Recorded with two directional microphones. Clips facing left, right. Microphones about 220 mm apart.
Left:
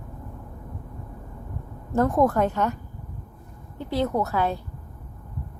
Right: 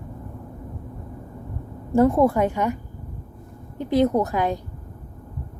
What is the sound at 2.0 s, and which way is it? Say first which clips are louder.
Speech: right 3 dB; 10° right (ahead or behind).